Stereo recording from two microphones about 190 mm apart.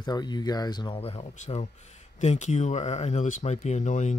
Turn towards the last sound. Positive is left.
turn(degrees=40)  # may be behind; listen again after turning